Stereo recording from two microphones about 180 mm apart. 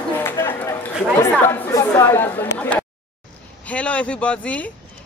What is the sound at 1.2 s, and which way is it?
A woman's voice, 10° left (ahead or behind).